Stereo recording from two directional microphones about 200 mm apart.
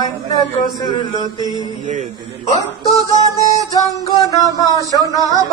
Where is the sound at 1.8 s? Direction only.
40° right (ahead or behind).